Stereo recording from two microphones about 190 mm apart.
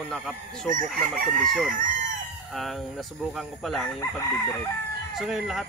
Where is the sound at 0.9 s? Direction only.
Centre (ahead or behind).